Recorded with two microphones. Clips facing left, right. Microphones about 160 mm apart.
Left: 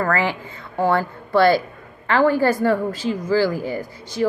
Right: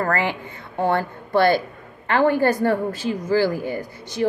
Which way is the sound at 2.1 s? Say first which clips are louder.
Left 1 dB; 20° right (ahead or behind).